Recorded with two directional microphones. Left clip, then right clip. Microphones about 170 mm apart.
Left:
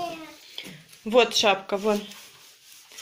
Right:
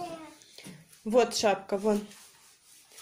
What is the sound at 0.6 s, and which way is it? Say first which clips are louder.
Speech: left 10 dB; 15° right (ahead or behind).